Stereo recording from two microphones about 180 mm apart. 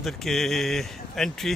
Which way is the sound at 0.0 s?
Centre (ahead or behind).